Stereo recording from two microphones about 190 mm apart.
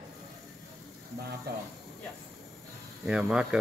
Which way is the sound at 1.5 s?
55° right (ahead or behind).